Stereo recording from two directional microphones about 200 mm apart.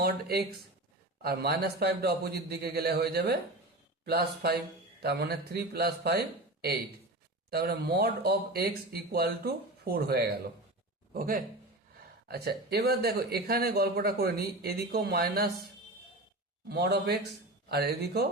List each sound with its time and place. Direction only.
0.0 s speech: 50° right (ahead or behind)
16.6 s speech: 55° right (ahead or behind)